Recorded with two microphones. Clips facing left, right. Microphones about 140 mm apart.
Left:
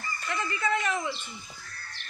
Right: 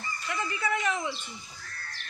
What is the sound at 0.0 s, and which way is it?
Fowl, 10° right (ahead or behind).